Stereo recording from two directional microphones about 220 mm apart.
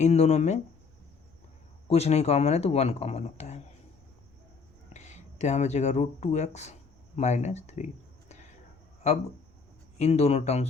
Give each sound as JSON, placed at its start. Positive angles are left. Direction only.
{"t": 0.0, "sound": "speech", "side_deg": 30}
{"t": 1.9, "sound": "speech", "side_deg": 30}
{"t": 4.9, "sound": "speech", "side_deg": 30}
{"t": 9.0, "sound": "speech", "side_deg": 30}